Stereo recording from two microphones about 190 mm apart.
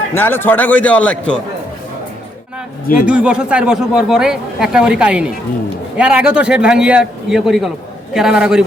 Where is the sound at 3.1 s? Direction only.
5° right (ahead or behind).